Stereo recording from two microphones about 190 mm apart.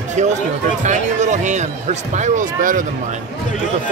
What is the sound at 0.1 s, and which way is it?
A man's voice, 40° right (ahead or behind).